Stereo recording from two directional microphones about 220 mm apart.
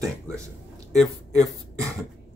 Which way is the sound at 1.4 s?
15° right (ahead or behind).